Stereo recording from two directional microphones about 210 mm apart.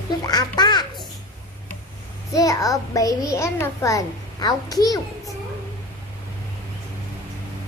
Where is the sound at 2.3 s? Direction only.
15° left (ahead or behind).